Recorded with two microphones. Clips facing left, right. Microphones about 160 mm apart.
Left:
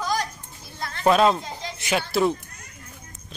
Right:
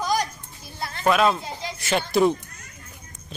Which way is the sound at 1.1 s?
30° left (ahead or behind).